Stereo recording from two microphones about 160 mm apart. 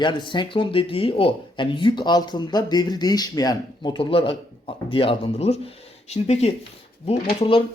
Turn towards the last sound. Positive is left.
turn(degrees=35)  # may be behind; listen again after turning